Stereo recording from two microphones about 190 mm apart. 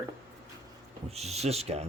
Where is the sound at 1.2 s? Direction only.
35° right (ahead or behind).